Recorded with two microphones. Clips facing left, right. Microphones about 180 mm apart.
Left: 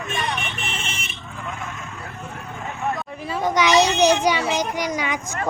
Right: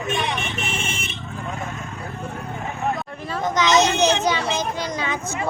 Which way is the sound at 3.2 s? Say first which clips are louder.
Left 1 dB; 10° left (ahead or behind).